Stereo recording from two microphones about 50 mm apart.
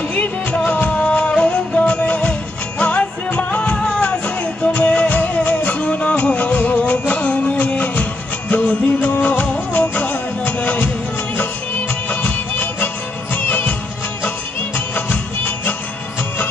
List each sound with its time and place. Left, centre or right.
0.1 s music: left
4.7 s music: left
12.1 s music: left
15.0 s music: left